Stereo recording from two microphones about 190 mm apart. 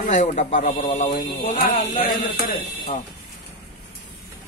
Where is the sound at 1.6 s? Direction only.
50° left (ahead or behind).